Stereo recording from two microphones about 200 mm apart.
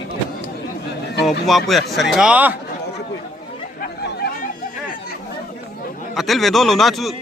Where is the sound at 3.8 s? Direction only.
55° left (ahead or behind).